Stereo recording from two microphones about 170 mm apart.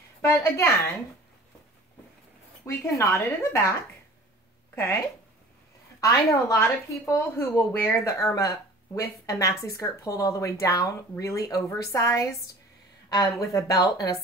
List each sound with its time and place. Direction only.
0.2 s speech: 15° left (ahead or behind)
2.6 s speech: 15° left (ahead or behind)
4.7 s speech: 15° left (ahead or behind)